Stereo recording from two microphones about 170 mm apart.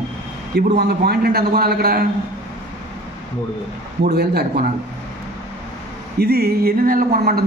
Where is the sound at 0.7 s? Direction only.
65° right (ahead or behind).